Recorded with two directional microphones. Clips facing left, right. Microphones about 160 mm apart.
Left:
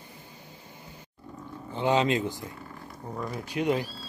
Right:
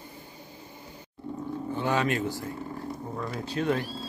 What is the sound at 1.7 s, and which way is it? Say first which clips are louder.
Speech: left 3 dB; 20° left (ahead or behind).